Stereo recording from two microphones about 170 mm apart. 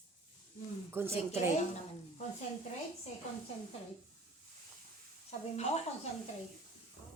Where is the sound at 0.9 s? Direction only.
15° right (ahead or behind).